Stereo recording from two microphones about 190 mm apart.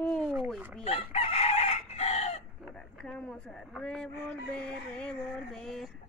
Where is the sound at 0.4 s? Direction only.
5° right (ahead or behind).